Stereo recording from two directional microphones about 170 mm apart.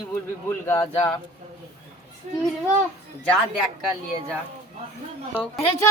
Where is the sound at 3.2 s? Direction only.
5° left (ahead or behind).